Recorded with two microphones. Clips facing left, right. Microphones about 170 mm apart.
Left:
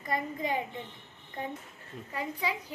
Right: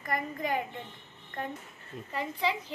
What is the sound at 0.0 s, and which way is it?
Speech, 20° left (ahead or behind).